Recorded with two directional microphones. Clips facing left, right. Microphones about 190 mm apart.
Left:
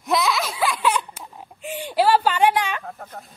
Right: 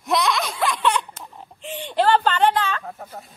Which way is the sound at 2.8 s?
5° right (ahead or behind).